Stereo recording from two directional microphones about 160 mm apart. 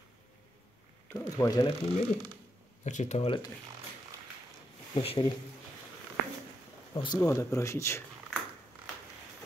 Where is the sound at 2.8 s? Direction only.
45° left (ahead or behind).